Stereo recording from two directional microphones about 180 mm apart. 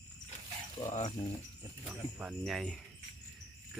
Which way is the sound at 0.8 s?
40° left (ahead or behind).